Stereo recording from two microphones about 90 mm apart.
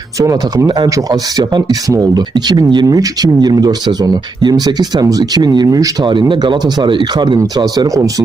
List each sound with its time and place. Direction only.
0.2 s speech: 35° right (ahead or behind)
0.7 s speech: 45° right (ahead or behind)
2.3 s speech: 55° right (ahead or behind)
6.1 s speech: 65° right (ahead or behind)
7.3 s speech: 45° right (ahead or behind)